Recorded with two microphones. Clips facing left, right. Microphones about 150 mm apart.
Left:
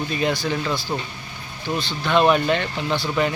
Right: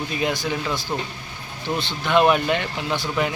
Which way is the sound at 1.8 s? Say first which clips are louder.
Even; 20° right (ahead or behind).